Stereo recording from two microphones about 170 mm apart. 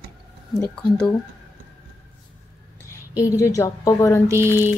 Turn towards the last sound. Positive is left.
turn(degrees=-15)  # may be behind; listen again after turning